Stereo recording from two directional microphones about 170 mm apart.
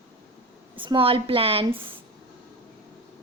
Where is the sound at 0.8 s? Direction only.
30° right (ahead or behind).